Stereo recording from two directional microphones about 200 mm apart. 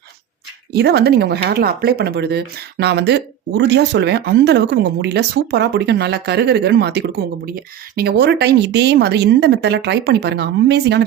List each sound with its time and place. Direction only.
0.7 s speech: 55° right (ahead or behind)